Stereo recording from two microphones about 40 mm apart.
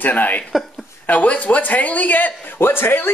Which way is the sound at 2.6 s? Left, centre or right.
Left.